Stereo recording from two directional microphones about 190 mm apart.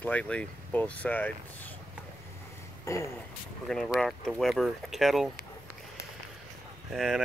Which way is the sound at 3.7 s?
5° left (ahead or behind).